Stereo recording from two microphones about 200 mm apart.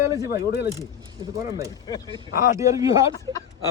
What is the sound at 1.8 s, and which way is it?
Speech, 20° left (ahead or behind).